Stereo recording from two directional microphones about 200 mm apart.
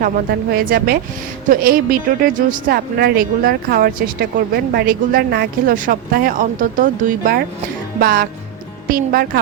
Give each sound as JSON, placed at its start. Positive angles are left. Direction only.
{"t": 0.5, "sound": "speech", "side_deg": -50}